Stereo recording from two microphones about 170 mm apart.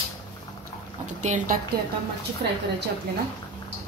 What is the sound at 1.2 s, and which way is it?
Speech, 45° right (ahead or behind).